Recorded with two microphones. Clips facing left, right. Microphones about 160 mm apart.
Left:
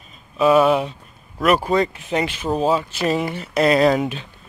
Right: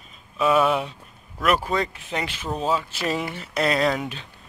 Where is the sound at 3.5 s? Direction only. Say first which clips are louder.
Left 6 dB; 10° left (ahead or behind).